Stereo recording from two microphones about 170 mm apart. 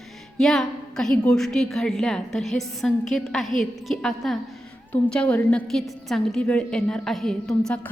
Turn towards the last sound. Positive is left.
turn(degrees=5)  # may be behind; listen again after turning